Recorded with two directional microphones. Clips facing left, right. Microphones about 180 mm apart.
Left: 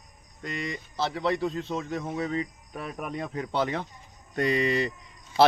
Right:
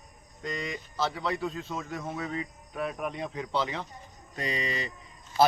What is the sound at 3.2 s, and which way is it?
Speech, 50° left (ahead or behind).